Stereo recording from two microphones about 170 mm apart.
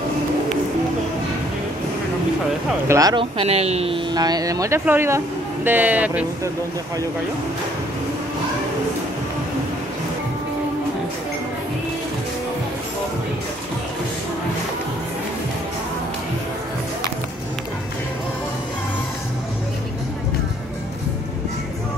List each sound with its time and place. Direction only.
2.9 s speech: 20° right (ahead or behind)